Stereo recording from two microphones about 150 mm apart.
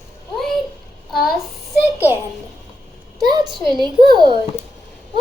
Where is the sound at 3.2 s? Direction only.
30° right (ahead or behind).